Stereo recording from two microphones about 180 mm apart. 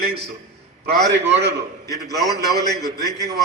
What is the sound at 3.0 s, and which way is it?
Speech, 20° right (ahead or behind).